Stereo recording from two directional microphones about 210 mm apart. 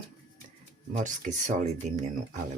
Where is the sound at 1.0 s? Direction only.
35° right (ahead or behind).